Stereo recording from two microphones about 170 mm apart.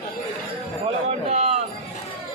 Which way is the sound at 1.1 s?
40° right (ahead or behind).